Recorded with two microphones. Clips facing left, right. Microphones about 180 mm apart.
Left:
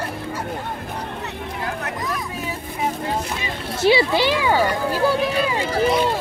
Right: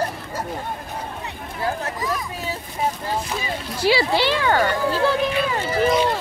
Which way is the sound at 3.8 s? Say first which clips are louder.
Left 2 dB; 20° left (ahead or behind).